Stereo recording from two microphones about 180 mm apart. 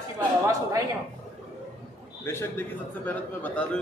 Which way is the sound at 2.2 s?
15° left (ahead or behind).